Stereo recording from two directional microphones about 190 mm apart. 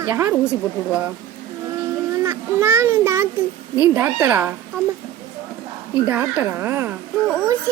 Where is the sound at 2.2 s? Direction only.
15° right (ahead or behind).